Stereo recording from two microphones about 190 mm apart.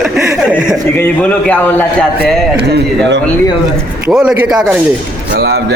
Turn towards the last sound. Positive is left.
turn(degrees=-55)  # may be behind; listen again after turning